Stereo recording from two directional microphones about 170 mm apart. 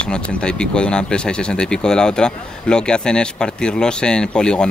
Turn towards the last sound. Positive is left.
turn(degrees=5)  # may be behind; listen again after turning